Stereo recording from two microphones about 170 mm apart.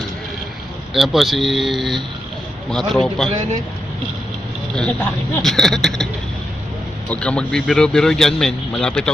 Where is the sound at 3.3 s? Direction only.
45° right (ahead or behind).